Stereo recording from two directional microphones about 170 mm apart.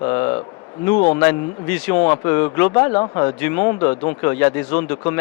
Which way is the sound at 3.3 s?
10° left (ahead or behind).